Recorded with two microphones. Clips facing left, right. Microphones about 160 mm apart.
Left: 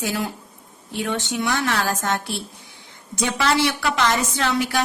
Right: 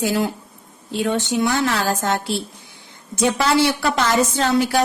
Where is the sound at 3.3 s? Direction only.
35° right (ahead or behind).